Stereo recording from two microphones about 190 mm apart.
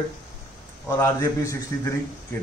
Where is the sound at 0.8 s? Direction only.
15° left (ahead or behind).